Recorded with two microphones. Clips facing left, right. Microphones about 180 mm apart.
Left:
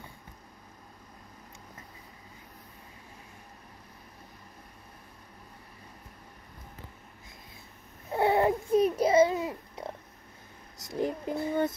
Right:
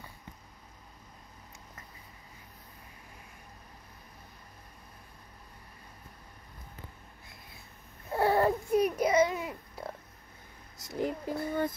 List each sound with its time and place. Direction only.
8.1 s babbling: 20° left (ahead or behind)
10.8 s child singing: 20° left (ahead or behind)